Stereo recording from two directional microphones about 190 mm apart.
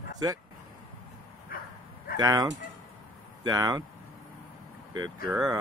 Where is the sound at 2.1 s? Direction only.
20° right (ahead or behind).